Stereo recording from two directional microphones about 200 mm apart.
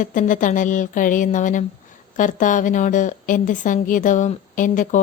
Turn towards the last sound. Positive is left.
turn(degrees=40)  # may be behind; listen again after turning